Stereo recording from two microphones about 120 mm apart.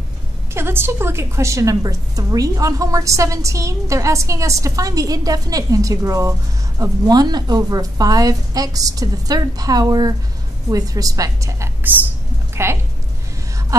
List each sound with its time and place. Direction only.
0.6 s a woman's voice: 20° right (ahead or behind)